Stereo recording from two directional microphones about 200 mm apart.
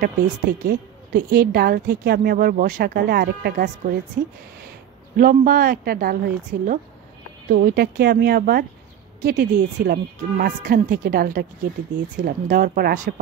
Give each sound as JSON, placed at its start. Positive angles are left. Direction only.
{"t": 0.0, "sound": "a woman's voice", "side_deg": -55}
{"t": 5.1, "sound": "a woman's voice", "side_deg": -45}